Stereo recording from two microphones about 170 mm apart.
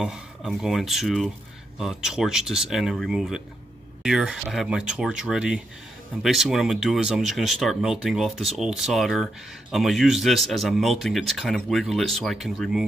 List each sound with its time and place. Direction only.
0.0 s speech: centre (ahead or behind)